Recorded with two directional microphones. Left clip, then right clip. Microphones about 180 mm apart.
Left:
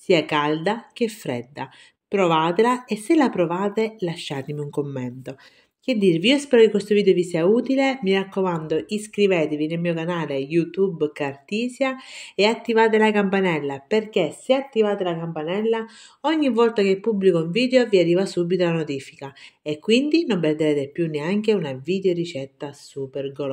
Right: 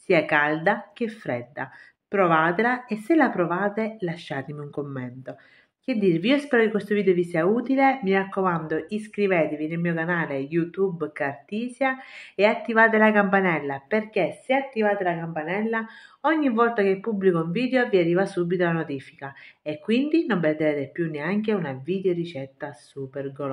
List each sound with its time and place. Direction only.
0.0 s speech: 40° left (ahead or behind)